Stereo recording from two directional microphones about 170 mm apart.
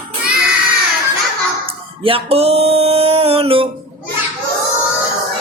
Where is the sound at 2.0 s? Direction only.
35° right (ahead or behind).